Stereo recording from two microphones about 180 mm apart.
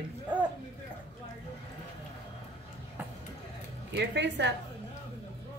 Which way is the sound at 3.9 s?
75° right (ahead or behind).